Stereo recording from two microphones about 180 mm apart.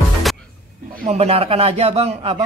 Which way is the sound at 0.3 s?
Centre (ahead or behind).